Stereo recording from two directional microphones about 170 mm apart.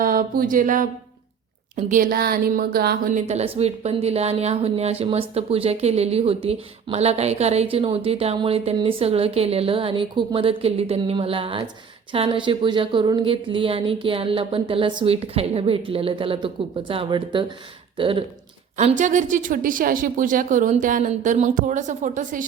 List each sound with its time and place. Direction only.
0.0 s a sound: 55° right (ahead or behind)
1.7 s a woman's voice: 50° right (ahead or behind)
3.1 s a woman's voice: 45° right (ahead or behind)
18.8 s a woman's voice: 45° right (ahead or behind)